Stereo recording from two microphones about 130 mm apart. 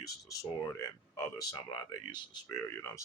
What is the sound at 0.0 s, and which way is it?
Speech, 25° left (ahead or behind).